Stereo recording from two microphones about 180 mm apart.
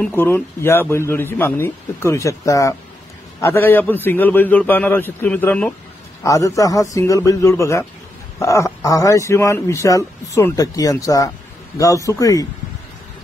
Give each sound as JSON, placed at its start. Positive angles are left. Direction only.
{"t": 0.0, "sound": "a man's voice", "side_deg": 10}